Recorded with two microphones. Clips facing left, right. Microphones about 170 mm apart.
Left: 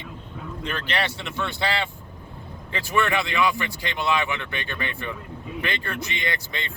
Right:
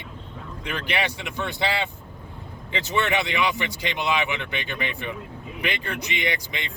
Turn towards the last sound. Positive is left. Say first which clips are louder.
# right 2 dB
turn(degrees=-15)  # may be behind; listen again after turning